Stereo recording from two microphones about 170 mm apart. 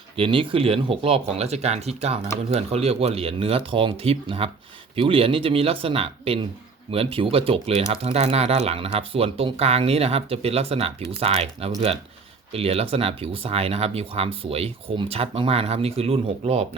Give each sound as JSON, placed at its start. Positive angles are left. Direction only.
{"t": 0.2, "sound": "speech", "side_deg": -30}